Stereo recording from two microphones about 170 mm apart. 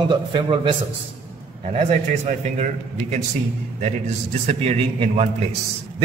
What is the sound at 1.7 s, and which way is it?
Speech, 45° right (ahead or behind).